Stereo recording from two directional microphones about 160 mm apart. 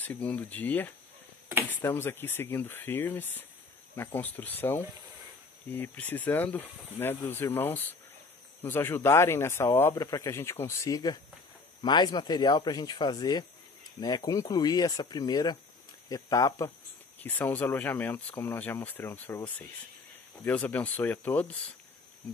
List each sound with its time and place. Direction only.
0.0 s speech: 10° left (ahead or behind)